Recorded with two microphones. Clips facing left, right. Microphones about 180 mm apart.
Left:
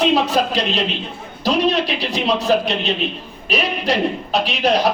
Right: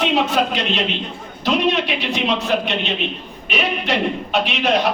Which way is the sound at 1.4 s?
35° left (ahead or behind).